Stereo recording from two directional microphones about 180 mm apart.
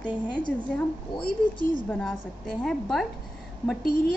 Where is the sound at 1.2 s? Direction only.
55° left (ahead or behind).